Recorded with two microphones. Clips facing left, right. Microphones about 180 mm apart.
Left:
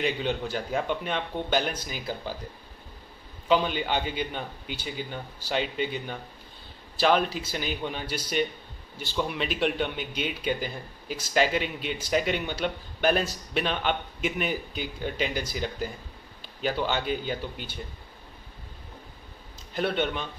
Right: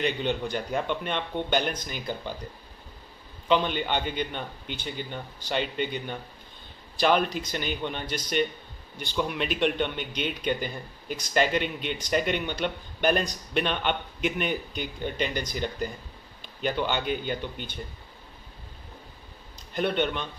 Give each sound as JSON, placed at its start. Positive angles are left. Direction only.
{"t": 0.0, "sound": "speech", "side_deg": 5}
{"t": 3.4, "sound": "speech", "side_deg": 5}
{"t": 19.7, "sound": "speech", "side_deg": 5}